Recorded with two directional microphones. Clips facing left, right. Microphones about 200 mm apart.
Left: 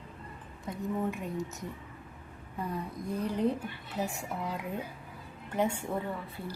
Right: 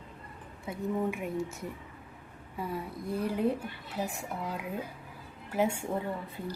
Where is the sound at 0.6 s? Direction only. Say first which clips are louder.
Right 1 dB; 10° right (ahead or behind).